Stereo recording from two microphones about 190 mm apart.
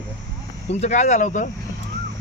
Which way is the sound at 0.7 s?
35° left (ahead or behind).